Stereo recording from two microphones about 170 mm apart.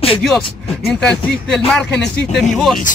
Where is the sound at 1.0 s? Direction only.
5° left (ahead or behind).